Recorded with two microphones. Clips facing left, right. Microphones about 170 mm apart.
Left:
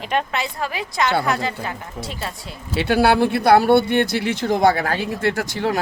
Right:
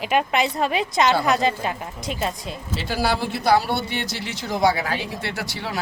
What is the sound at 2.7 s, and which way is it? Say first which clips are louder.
Speech: left 8 dB; 60° left (ahead or behind).